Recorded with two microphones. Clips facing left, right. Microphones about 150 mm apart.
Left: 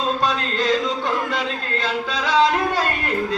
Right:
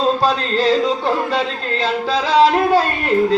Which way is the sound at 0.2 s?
30° right (ahead or behind).